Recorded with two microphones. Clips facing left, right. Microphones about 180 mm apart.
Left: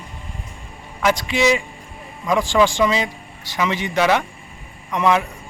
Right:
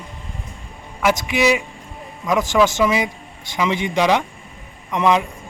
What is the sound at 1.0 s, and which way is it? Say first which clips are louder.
A man's voice: even; 10° right (ahead or behind).